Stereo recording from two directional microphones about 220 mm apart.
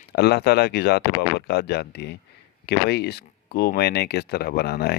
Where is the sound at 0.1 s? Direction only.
50° left (ahead or behind).